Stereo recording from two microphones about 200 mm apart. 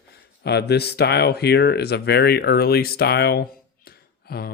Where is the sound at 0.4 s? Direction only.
55° left (ahead or behind).